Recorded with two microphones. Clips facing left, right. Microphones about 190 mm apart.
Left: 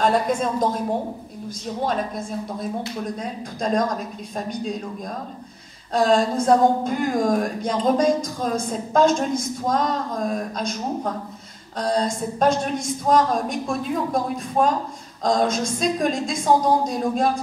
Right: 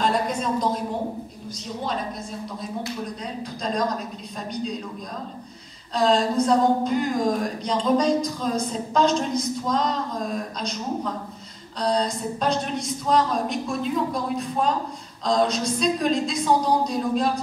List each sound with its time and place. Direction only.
0.0 s a woman's voice: 50° left (ahead or behind)
3.2 s a woman's voice: 50° left (ahead or behind)
5.9 s a woman's voice: 50° left (ahead or behind)